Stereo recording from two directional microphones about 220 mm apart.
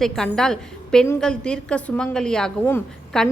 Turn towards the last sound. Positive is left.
turn(degrees=5)  # may be behind; listen again after turning